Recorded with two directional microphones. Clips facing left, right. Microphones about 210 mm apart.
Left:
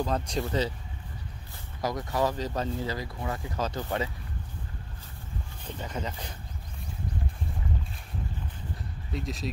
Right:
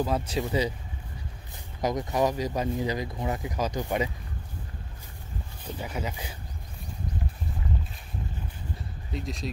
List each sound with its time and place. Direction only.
0.0 s speech: 5° right (ahead or behind)
1.8 s speech: 20° right (ahead or behind)
5.7 s speech: 10° right (ahead or behind)
9.1 s speech: centre (ahead or behind)